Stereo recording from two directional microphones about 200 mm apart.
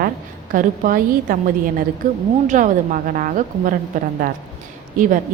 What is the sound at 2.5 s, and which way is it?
A woman's voice, 40° right (ahead or behind).